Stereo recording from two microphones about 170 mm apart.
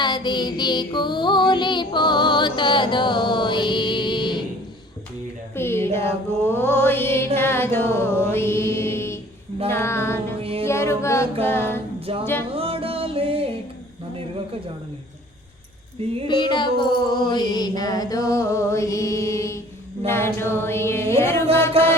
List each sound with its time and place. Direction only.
0.0 s child singing: 25° left (ahead or behind)
5.5 s speech: 15° left (ahead or behind)
6.4 s mantra: 15° left (ahead or behind)
10.4 s music: 35° right (ahead or behind)
10.7 s mantra: 15° left (ahead or behind)
11.9 s music: 35° right (ahead or behind)
12.2 s mantra: 15° left (ahead or behind)
12.5 s music: 35° right (ahead or behind)
16.2 s mantra: 25° left (ahead or behind)
21.7 s mantra: 35° right (ahead or behind)